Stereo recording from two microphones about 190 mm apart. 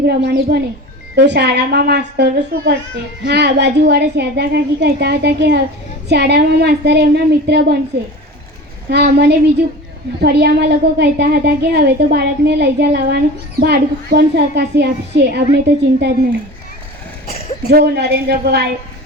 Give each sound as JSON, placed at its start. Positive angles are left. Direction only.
{"t": 0.0, "sound": "a woman's voice", "side_deg": -60}
{"t": 8.9, "sound": "a woman's voice", "side_deg": -60}
{"t": 17.7, "sound": "a woman's voice", "side_deg": -55}